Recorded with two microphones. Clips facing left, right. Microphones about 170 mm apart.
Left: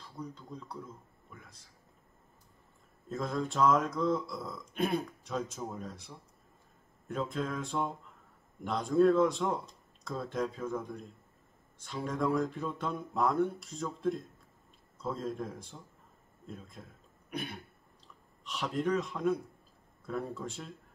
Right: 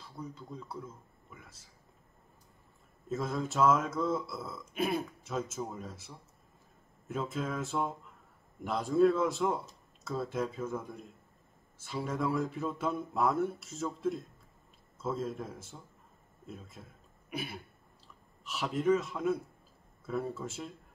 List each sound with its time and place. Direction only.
0.2 s speech: 5° right (ahead or behind)
3.1 s speech: 5° right (ahead or behind)
17.3 s throat clearing: 5° right (ahead or behind)
18.0 s speech: 5° right (ahead or behind)